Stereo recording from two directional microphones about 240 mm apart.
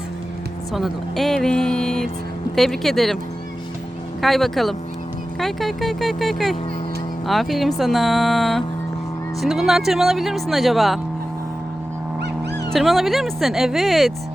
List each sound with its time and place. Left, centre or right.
0.7 s speech: centre
4.2 s speech: centre
12.7 s speech: centre